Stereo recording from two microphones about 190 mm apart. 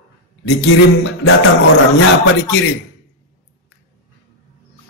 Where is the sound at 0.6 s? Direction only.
75° left (ahead or behind).